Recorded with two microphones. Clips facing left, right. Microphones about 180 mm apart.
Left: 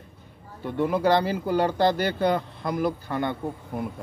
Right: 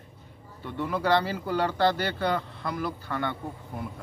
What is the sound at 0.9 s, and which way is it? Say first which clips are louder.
A man's voice: left 2 dB; 15° left (ahead or behind).